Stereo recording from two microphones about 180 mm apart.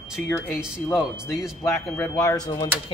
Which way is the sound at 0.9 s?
Centre (ahead or behind).